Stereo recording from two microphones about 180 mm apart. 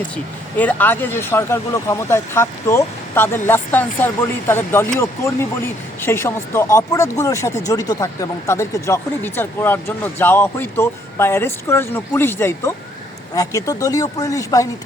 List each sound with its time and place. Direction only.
0.5 s speech: 10° left (ahead or behind)